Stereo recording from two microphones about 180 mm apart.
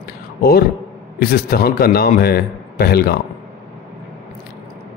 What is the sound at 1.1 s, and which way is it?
A man's voice, 55° left (ahead or behind).